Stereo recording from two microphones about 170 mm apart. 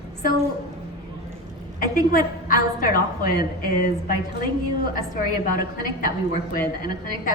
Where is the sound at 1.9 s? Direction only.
55° left (ahead or behind).